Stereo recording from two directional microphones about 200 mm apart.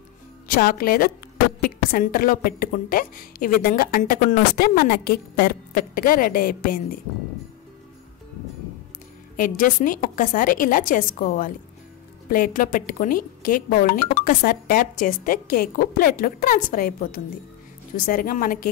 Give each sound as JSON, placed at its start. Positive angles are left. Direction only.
{"t": 0.5, "sound": "a woman's voice", "side_deg": 45}
{"t": 9.4, "sound": "a woman's voice", "side_deg": 45}